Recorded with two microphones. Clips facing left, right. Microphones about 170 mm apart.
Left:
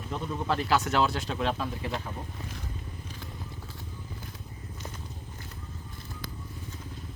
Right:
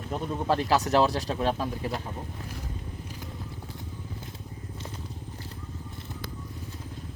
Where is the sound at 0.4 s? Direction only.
40° right (ahead or behind).